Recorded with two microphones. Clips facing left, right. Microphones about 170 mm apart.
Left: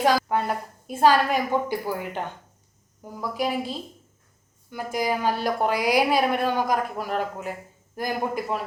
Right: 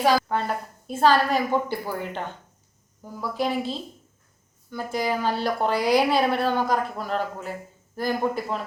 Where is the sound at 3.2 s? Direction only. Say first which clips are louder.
Right 1 dB; 10° left (ahead or behind).